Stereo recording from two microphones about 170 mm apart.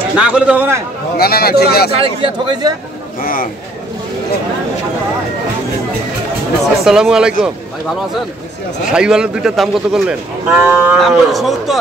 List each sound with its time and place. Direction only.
0.2 s a man's voice: 5° right (ahead or behind)
1.1 s a man's voice: 65° left (ahead or behind)
1.9 s speech: 30° right (ahead or behind)
3.2 s speech: 55° left (ahead or behind)
6.8 s speech: 5° right (ahead or behind)